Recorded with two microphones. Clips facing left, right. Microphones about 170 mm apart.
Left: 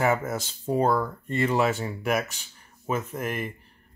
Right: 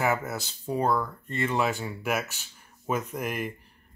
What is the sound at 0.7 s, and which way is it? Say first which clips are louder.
Speech: left 3 dB; 25° left (ahead or behind).